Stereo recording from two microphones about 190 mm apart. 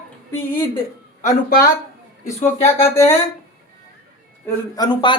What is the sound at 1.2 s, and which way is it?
Speech, 50° left (ahead or behind).